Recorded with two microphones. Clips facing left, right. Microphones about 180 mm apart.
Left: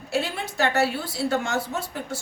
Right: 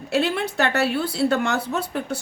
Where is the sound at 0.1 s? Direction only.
65° right (ahead or behind).